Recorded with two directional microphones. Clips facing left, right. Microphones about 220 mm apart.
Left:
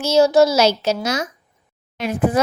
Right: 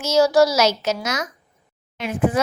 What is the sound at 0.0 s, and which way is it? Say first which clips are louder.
A child's voice: left 2 dB; 30° left (ahead or behind).